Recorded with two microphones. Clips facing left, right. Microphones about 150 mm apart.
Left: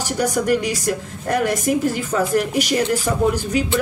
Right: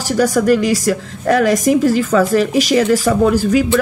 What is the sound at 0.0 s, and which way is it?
A woman's voice, 90° right.